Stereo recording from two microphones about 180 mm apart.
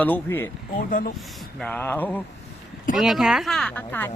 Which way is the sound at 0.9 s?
50° left (ahead or behind).